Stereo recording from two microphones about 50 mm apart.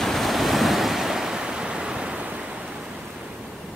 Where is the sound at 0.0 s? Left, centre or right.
Centre; by 2.4 s right.